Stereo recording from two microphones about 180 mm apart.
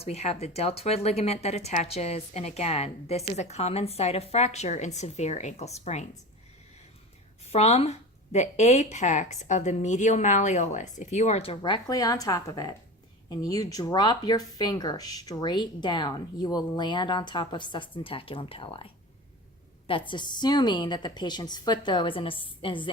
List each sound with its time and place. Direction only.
0.0 s speech: 35° left (ahead or behind)
7.5 s speech: 35° left (ahead or behind)
19.9 s speech: 25° left (ahead or behind)